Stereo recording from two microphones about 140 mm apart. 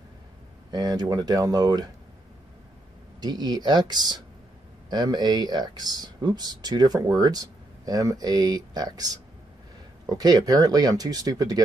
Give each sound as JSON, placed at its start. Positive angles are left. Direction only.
{"t": 0.7, "sound": "speech", "side_deg": -30}
{"t": 3.2, "sound": "speech", "side_deg": -30}